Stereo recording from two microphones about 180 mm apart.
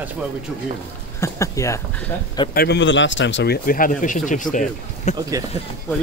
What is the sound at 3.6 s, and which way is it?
Speech, 50° left (ahead or behind).